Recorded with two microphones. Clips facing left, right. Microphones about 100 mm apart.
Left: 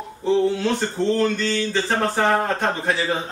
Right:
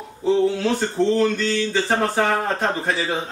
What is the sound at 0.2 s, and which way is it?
Speech, centre (ahead or behind).